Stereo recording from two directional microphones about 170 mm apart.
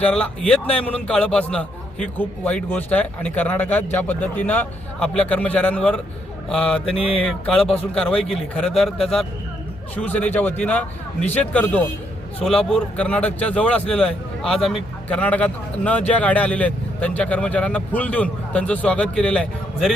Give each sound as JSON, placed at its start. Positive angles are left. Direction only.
{"t": 0.0, "sound": "a man's voice", "side_deg": 5}
{"t": 6.9, "sound": "speech", "side_deg": 35}
{"t": 7.3, "sound": "a man's voice", "side_deg": 5}